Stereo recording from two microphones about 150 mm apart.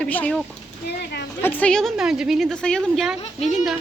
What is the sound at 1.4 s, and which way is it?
Speech, 10° left (ahead or behind).